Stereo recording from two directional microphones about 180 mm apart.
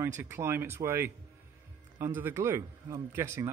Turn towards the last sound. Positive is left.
turn(degrees=-15)  # may be behind; listen again after turning